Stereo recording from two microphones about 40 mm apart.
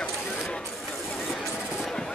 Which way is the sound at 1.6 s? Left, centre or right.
Centre.